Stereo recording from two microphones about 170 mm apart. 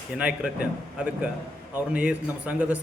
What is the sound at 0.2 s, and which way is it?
A man's voice, 5° right (ahead or behind).